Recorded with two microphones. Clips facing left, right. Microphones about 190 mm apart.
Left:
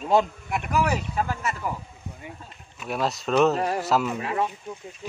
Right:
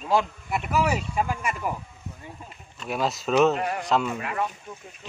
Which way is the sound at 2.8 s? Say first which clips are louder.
Even; centre (ahead or behind).